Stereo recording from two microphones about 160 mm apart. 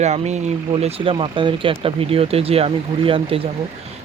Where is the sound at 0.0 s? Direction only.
45° right (ahead or behind).